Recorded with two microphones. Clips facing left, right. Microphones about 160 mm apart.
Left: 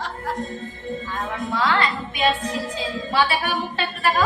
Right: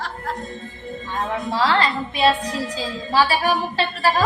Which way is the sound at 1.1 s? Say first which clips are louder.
Right 5 dB; 30° right (ahead or behind).